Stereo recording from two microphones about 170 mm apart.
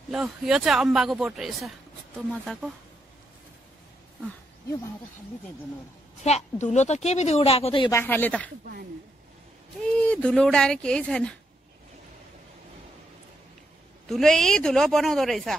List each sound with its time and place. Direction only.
0.1 s speech: 5° right (ahead or behind)
6.2 s a woman's voice: 45° left (ahead or behind)
7.9 s speech: 10° left (ahead or behind)
10.0 s speech: 5° left (ahead or behind)
14.0 s speech: centre (ahead or behind)